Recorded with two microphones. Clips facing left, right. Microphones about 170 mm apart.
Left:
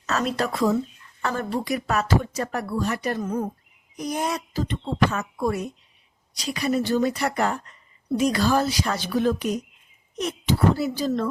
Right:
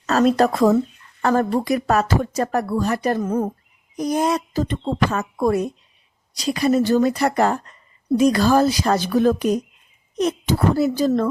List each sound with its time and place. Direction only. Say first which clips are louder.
0.0 s a woman's voice: right 9 dB; 35° right (ahead or behind)